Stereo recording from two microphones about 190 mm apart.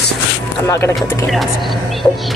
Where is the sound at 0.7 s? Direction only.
15° left (ahead or behind).